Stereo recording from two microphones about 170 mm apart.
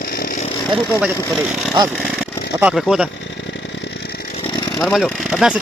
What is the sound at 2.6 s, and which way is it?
Speech, 5° right (ahead or behind).